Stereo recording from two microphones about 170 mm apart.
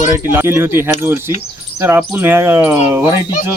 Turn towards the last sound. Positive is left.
turn(degrees=-15)  # may be behind; listen again after turning